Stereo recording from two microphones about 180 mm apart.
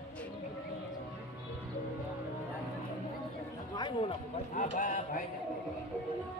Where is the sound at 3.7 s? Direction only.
25° left (ahead or behind).